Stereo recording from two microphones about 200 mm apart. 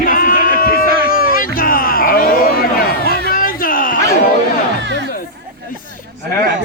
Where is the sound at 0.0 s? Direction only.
45° left (ahead or behind).